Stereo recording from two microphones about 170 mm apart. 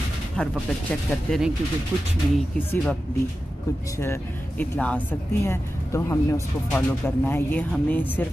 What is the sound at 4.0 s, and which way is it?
Speech, 10° left (ahead or behind).